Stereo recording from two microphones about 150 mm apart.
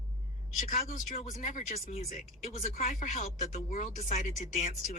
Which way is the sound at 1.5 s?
60° left (ahead or behind).